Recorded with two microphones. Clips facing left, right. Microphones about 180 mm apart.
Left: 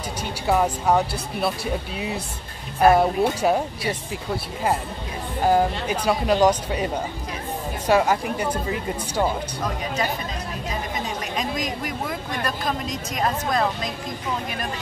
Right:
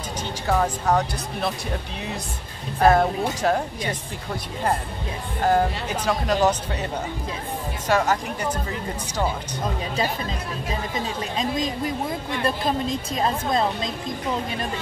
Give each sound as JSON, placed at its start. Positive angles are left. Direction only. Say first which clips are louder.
{"t": 0.5, "sound": "speech", "louder": "left 2 dB", "side_deg": 10}
{"t": 2.8, "sound": "speech", "louder": "left 2 dB", "side_deg": 10}
{"t": 5.4, "sound": "speech", "louder": "left 1 dB", "side_deg": 10}
{"t": 7.9, "sound": "speech", "louder": "left 2 dB", "side_deg": 10}
{"t": 11.3, "sound": "a woman's voice", "louder": "right 3 dB", "side_deg": -25}